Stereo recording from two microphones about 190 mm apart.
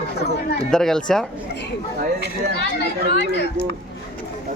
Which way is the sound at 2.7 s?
60° left (ahead or behind).